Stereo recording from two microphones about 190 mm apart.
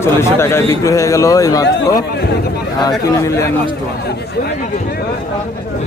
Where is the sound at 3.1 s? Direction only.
15° left (ahead or behind).